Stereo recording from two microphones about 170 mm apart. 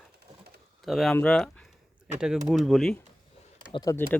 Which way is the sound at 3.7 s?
25° left (ahead or behind).